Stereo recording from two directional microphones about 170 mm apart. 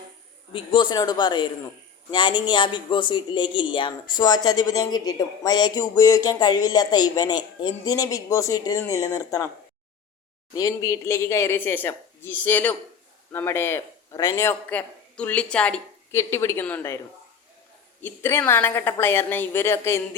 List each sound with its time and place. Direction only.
0.5 s speech: 30° left (ahead or behind)
10.5 s speech: 20° left (ahead or behind)
18.0 s speech: 15° left (ahead or behind)